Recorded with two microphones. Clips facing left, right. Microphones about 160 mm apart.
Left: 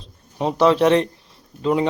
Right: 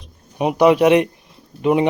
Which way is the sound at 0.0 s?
15° right (ahead or behind).